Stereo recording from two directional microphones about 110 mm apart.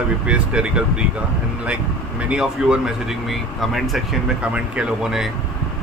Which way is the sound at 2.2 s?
10° right (ahead or behind).